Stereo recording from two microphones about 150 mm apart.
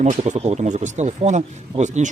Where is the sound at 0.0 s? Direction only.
50° right (ahead or behind).